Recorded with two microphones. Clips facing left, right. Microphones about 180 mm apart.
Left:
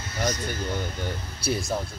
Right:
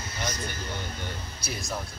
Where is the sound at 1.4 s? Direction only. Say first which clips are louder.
Left 11 dB; 30° left (ahead or behind).